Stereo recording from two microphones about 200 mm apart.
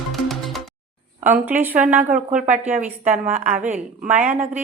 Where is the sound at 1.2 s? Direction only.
10° right (ahead or behind).